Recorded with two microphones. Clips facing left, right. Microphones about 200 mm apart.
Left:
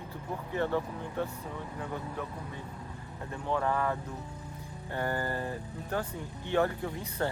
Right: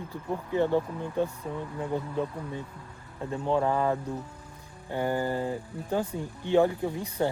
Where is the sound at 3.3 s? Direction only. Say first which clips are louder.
Right 5 dB; 25° right (ahead or behind).